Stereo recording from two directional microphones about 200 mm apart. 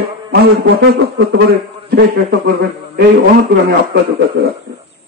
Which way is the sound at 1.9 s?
50° right (ahead or behind).